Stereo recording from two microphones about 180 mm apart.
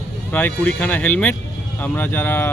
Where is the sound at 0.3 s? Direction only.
10° left (ahead or behind).